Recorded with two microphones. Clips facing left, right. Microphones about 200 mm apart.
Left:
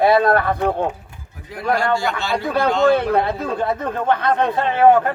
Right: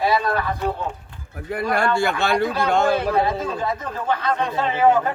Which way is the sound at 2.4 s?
60° left (ahead or behind).